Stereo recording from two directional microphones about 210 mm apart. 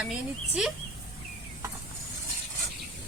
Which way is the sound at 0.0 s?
5° right (ahead or behind).